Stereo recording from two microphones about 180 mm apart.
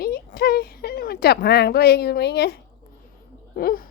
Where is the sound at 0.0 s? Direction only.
60° left (ahead or behind).